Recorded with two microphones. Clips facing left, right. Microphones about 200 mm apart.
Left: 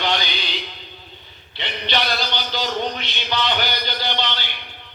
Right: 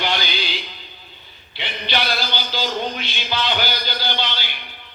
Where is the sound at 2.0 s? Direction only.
20° left (ahead or behind).